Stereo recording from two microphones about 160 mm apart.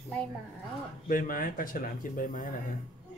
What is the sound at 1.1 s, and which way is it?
Speech, 60° left (ahead or behind).